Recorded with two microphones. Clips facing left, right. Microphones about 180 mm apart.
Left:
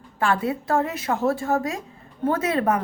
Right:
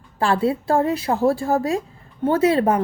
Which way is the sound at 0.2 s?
30° right (ahead or behind).